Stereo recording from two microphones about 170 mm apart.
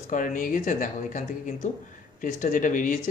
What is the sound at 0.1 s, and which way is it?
Speech, 50° left (ahead or behind).